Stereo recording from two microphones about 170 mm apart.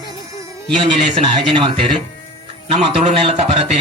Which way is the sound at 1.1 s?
30° right (ahead or behind).